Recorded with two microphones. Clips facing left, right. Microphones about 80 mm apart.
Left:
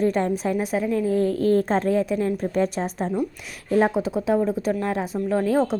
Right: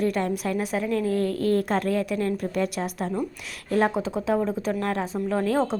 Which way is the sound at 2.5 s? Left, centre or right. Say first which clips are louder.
Left 3 dB; left.